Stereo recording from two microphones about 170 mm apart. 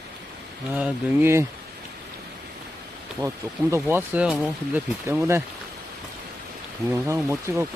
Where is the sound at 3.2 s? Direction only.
20° right (ahead or behind).